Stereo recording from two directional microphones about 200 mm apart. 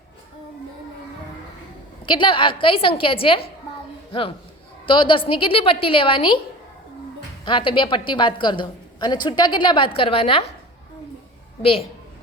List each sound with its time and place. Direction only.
2.0 s a woman's voice: 25° left (ahead or behind)
7.4 s a woman's voice: 25° left (ahead or behind)
11.6 s a woman's voice: 30° left (ahead or behind)